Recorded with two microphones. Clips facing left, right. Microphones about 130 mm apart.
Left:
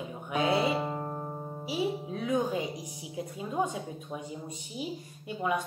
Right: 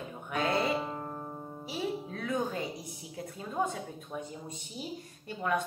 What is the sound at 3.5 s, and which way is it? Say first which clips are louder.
Speech: left 2 dB; 15° left (ahead or behind).